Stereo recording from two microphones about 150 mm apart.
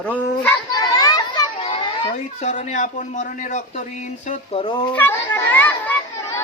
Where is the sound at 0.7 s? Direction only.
25° left (ahead or behind).